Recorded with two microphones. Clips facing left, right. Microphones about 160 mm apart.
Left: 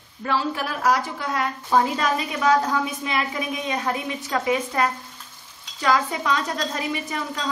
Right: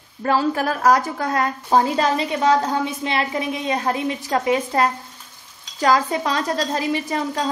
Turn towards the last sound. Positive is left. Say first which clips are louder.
# right 5 dB
turn(degrees=-35)  # may be behind; listen again after turning